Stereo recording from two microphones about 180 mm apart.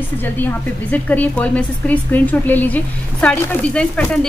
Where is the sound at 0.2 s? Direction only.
10° left (ahead or behind).